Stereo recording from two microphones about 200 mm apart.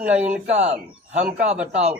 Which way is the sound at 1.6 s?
5° right (ahead or behind).